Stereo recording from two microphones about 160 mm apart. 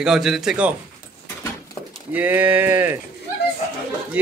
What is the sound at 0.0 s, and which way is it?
Speech, 5° right (ahead or behind).